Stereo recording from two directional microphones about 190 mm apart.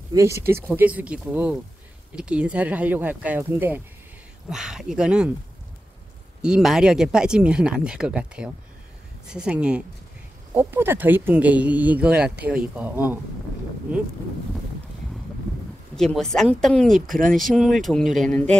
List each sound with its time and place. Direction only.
0.1 s speech: 15° right (ahead or behind)
6.4 s speech: 5° right (ahead or behind)
16.0 s speech: 5° left (ahead or behind)